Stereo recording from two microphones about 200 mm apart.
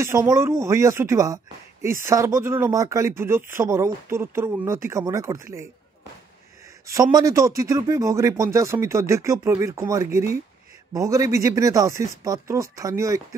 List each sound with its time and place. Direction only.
0.0 s speech: 15° right (ahead or behind)
6.9 s speech: 20° right (ahead or behind)